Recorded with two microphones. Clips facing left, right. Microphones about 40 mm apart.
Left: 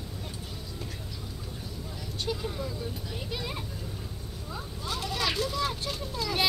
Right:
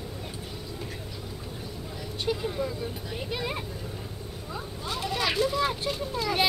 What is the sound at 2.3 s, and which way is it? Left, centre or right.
Vehicle, centre.